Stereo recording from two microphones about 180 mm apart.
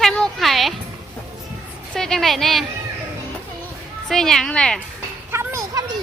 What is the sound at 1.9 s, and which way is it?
Speech, 5° left (ahead or behind).